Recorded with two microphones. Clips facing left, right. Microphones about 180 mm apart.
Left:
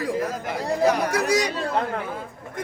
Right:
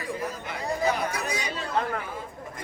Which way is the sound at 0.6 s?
90° left.